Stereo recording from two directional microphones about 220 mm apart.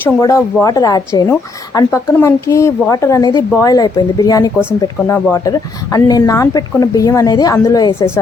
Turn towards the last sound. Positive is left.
turn(degrees=15)  # may be behind; listen again after turning